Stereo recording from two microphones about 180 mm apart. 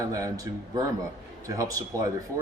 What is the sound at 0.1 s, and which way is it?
Speech, 20° right (ahead or behind).